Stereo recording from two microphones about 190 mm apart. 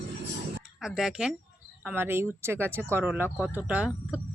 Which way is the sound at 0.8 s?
5° right (ahead or behind).